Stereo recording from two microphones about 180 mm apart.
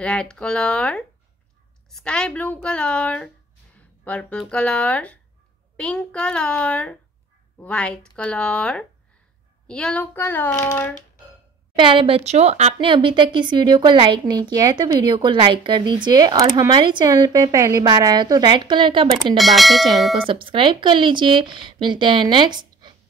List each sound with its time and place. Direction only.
0.0 s a child's voice: 5° left (ahead or behind)
11.7 s speech: 25° right (ahead or behind)
19.3 s a child's voice: centre (ahead or behind)
20.2 s speech: 30° right (ahead or behind)